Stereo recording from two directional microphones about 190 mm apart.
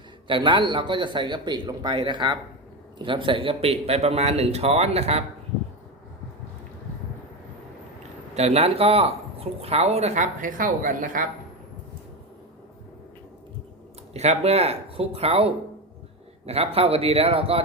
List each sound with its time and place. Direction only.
0.3 s speech: 25° right (ahead or behind)
8.4 s speech: 35° right (ahead or behind)
14.1 s speech: 35° right (ahead or behind)